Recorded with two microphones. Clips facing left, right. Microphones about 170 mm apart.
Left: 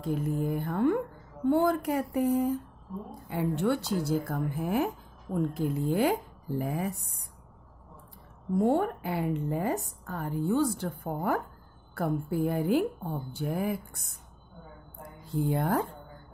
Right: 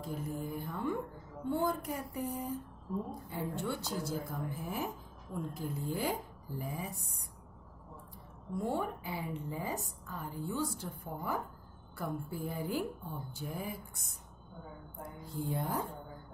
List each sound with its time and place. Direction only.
0.0 s speech: 70° left (ahead or behind)
8.5 s a woman's voice: 60° left (ahead or behind)
15.3 s speech: 75° left (ahead or behind)